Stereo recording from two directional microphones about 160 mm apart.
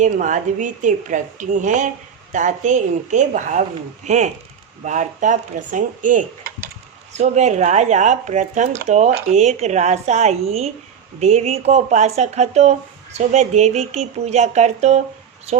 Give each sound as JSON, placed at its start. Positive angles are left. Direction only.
{"t": 0.0, "sound": "a woman's voice", "side_deg": -50}
{"t": 7.1, "sound": "a woman's voice", "side_deg": -45}